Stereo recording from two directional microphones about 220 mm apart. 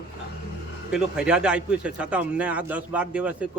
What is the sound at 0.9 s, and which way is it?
A man's voice, 5° right (ahead or behind).